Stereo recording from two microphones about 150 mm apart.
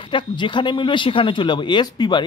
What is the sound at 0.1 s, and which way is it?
Speech, 30° left (ahead or behind).